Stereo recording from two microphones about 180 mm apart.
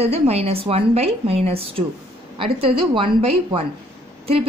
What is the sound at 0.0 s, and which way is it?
A woman's voice, 35° right (ahead or behind).